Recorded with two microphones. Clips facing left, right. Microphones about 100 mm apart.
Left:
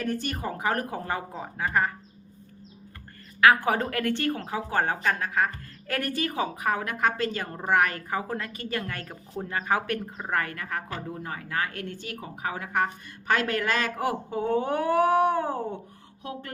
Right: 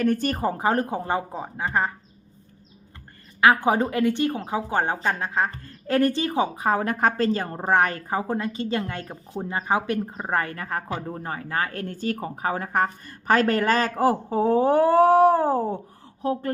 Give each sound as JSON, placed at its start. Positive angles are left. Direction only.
{"t": 0.0, "sound": "speech", "side_deg": -55}
{"t": 0.3, "sound": "a woman's voice", "side_deg": -35}
{"t": 3.4, "sound": "a woman's voice", "side_deg": -20}